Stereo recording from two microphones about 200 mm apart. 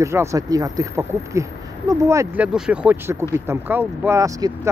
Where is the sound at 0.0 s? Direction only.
15° right (ahead or behind).